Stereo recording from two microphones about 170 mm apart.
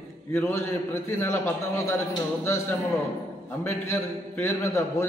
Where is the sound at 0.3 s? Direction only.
15° left (ahead or behind).